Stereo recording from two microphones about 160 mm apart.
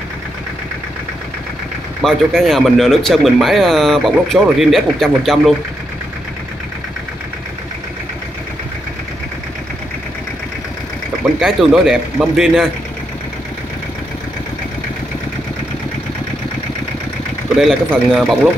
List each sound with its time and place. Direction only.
2.0 s speech: centre (ahead or behind)
11.3 s speech: centre (ahead or behind)
17.6 s speech: centre (ahead or behind)